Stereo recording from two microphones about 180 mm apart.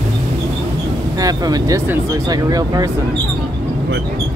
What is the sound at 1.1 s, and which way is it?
Speech, 20° right (ahead or behind).